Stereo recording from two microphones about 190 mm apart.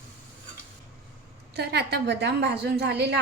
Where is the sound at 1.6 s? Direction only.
60° right (ahead or behind).